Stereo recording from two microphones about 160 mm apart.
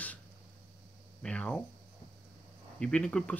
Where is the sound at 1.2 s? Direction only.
5° left (ahead or behind).